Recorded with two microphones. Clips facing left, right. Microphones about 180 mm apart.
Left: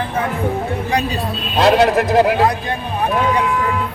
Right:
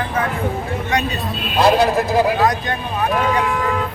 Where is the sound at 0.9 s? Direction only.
30° left (ahead or behind).